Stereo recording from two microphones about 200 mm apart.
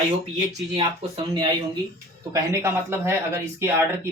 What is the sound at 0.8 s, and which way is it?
Speech, 25° right (ahead or behind).